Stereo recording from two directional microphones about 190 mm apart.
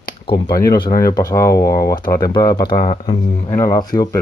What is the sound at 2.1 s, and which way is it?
Speech, 20° left (ahead or behind).